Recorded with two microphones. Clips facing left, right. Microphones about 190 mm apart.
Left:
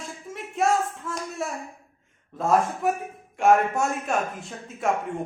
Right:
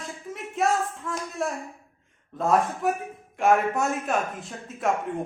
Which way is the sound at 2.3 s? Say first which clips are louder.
Left 1 dB; centre (ahead or behind).